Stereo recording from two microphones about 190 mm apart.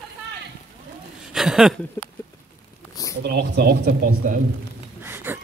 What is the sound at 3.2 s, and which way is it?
Speech, 60° right (ahead or behind).